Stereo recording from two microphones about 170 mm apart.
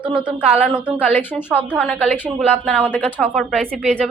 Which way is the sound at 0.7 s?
5° right (ahead or behind).